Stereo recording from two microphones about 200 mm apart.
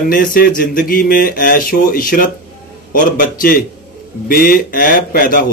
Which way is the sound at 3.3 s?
45° left (ahead or behind).